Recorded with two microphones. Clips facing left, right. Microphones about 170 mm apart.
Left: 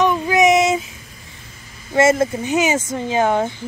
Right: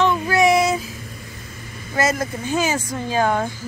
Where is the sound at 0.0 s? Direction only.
15° left (ahead or behind).